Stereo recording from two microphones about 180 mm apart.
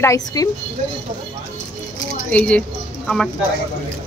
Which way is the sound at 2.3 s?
5° left (ahead or behind).